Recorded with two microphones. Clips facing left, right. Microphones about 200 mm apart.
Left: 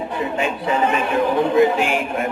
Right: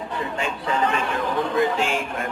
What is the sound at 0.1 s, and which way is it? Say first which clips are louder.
Speech: left 4 dB; 20° left (ahead or behind).